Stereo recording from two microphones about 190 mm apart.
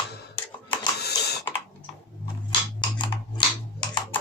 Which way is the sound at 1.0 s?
60° left (ahead or behind).